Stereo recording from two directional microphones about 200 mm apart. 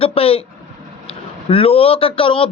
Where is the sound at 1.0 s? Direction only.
30° left (ahead or behind).